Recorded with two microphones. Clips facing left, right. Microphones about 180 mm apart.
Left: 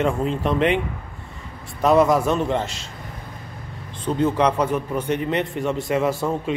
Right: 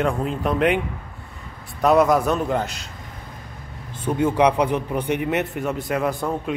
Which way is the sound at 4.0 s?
10° right (ahead or behind).